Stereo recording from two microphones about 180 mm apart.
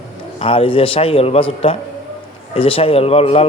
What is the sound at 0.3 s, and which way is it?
A man's voice, 35° left (ahead or behind).